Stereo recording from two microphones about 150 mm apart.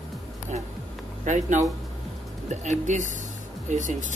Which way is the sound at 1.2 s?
55° right (ahead or behind).